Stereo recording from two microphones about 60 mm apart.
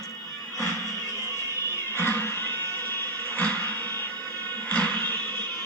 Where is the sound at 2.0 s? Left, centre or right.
Left.